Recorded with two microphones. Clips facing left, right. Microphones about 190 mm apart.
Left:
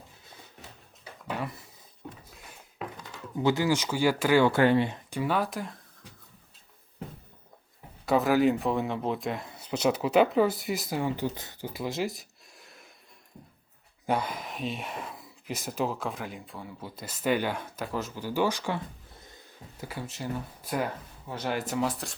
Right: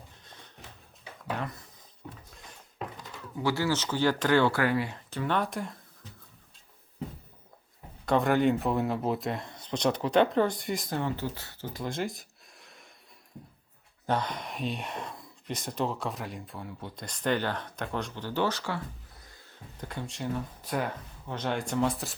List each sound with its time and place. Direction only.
0.3 s music: 10° left (ahead or behind)
1.4 s speech: 5° left (ahead or behind)
3.3 s speech: 20° left (ahead or behind)
4.5 s speech: 25° left (ahead or behind)
5.1 s speech: 10° left (ahead or behind)
8.0 s speech: 5° left (ahead or behind)
14.1 s speech: 5° left (ahead or behind)